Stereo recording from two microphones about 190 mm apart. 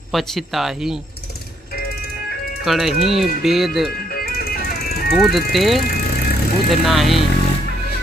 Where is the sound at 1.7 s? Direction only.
55° left (ahead or behind).